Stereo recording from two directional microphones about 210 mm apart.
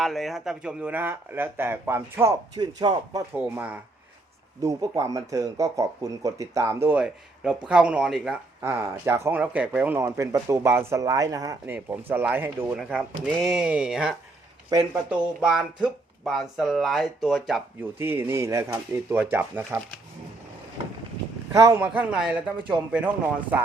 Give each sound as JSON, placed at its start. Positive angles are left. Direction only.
{"t": 0.0, "sound": "speech", "side_deg": 0}
{"t": 21.5, "sound": "speech", "side_deg": -15}